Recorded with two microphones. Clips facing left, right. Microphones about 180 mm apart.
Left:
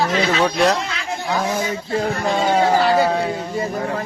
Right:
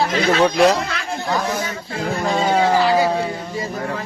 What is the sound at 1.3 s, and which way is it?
Speech, 15° left (ahead or behind).